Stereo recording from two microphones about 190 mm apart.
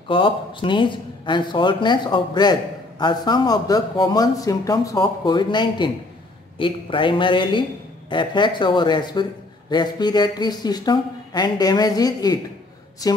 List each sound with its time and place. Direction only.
0.1 s speech: 25° left (ahead or behind)